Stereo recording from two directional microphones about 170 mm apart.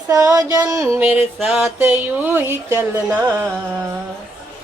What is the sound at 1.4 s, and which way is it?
Music, 5° right (ahead or behind).